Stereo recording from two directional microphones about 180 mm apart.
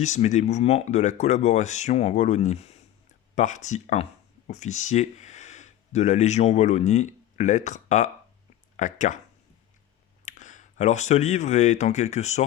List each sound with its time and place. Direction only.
0.0 s speech: 40° left (ahead or behind)
10.2 s speech: 45° left (ahead or behind)